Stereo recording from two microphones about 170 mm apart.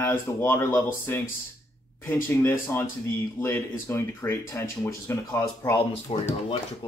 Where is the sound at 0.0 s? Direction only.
15° left (ahead or behind).